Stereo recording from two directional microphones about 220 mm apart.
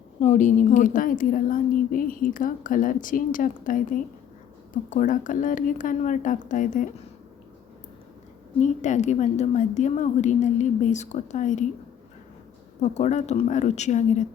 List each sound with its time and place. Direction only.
0.2 s a woman's voice: 35° left (ahead or behind)
8.6 s a woman's voice: 35° left (ahead or behind)
12.8 s a woman's voice: 30° left (ahead or behind)